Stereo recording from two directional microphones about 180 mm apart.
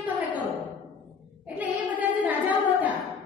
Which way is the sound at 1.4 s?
10° right (ahead or behind).